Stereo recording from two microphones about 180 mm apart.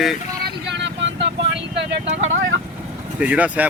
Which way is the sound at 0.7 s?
85° right.